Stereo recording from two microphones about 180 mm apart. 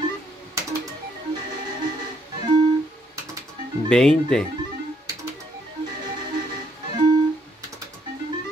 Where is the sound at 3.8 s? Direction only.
5° left (ahead or behind).